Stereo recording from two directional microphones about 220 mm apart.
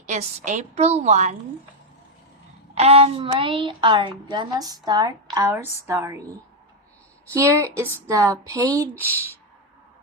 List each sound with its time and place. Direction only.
0.1 s a woman's voice: 30° right (ahead or behind)
2.7 s a woman's voice: 30° right (ahead or behind)
7.3 s speech: 15° right (ahead or behind)